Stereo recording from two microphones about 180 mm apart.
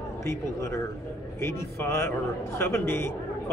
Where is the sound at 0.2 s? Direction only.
15° left (ahead or behind).